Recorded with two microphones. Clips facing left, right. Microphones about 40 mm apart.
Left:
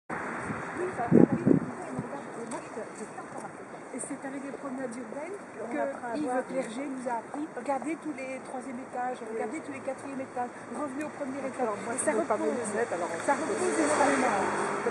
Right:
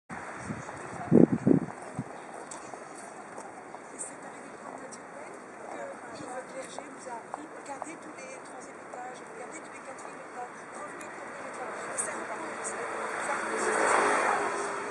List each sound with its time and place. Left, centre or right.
0.3 s a sound: centre
6.0 s speech: centre
10.8 s speech: centre
14.0 s vehicle: centre